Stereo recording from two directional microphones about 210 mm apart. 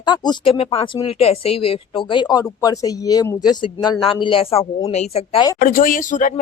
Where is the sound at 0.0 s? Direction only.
20° left (ahead or behind).